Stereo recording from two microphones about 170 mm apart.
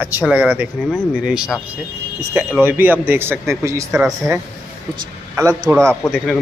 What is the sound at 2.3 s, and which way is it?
Speech, 15° right (ahead or behind).